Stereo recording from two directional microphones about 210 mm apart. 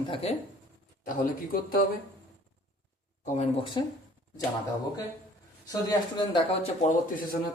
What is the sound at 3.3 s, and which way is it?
Speech, 20° left (ahead or behind).